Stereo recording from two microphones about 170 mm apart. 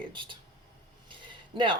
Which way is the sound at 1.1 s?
30° right (ahead or behind).